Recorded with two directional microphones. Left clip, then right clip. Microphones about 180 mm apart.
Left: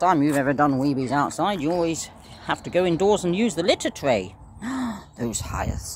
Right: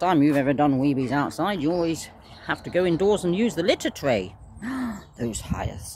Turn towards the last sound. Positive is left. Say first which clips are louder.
# left 3 dB
turn(degrees=0)  # may be behind; listen again after turning